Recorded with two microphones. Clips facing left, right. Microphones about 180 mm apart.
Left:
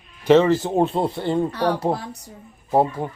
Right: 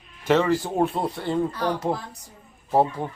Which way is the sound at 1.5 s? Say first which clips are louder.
Left 4 dB; 70° left (ahead or behind).